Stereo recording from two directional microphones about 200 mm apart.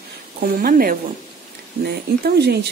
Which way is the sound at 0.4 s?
45° right (ahead or behind).